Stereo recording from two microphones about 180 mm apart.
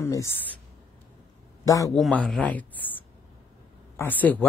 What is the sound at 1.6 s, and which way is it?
Speech, 20° left (ahead or behind).